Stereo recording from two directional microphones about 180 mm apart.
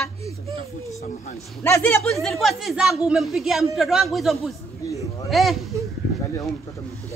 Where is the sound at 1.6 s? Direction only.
10° left (ahead or behind).